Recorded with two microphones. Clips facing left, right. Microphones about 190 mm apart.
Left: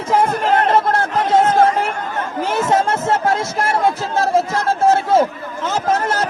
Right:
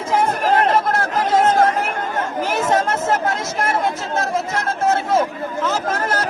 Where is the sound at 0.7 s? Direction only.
30° left (ahead or behind).